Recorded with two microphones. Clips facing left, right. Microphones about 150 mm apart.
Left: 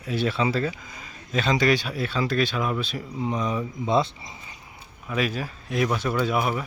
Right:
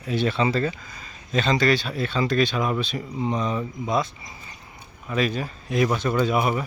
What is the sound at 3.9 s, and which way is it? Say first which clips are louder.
Speech: left 3 dB; 25° left (ahead or behind).